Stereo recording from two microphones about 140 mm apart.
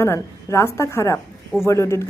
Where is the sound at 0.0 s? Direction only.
20° left (ahead or behind).